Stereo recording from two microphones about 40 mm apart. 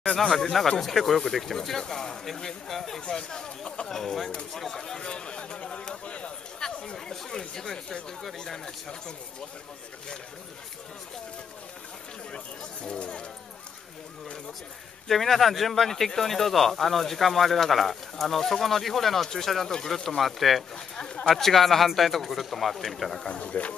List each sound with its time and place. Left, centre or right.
0.2 s speech: centre
3.1 s speech: centre
3.9 s speech: centre
5.0 s a sound: left
6.6 s chatter: centre
12.8 s speech: left
15.0 s speech: centre
20.7 s speech: centre
23.2 s speech: left